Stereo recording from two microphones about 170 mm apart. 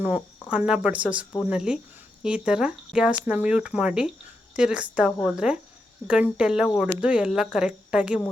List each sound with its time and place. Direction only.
0.5 s speech: 5° right (ahead or behind)